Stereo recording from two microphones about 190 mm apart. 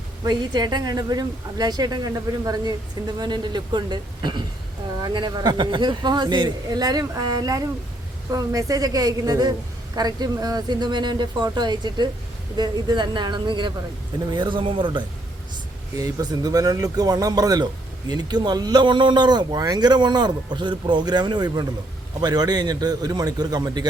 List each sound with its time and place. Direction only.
0.3 s a woman's voice: 20° right (ahead or behind)